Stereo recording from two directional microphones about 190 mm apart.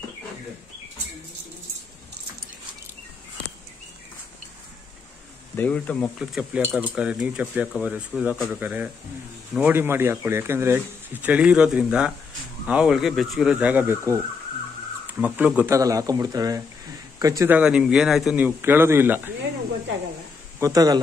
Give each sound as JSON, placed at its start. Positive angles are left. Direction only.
{"t": 5.6, "sound": "speech", "side_deg": 10}
{"t": 6.1, "sound": "speech", "side_deg": -5}
{"t": 17.6, "sound": "speech", "side_deg": -5}
{"t": 20.5, "sound": "a man's voice", "side_deg": -15}